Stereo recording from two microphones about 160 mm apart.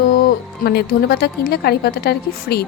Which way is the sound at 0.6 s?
90° left.